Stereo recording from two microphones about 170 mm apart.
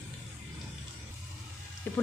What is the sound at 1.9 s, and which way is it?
Speech, 10° left (ahead or behind).